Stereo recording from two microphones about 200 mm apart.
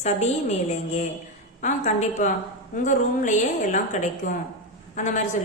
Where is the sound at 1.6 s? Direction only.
35° left (ahead or behind).